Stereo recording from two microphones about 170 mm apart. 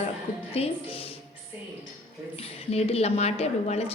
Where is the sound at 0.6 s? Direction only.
35° left (ahead or behind).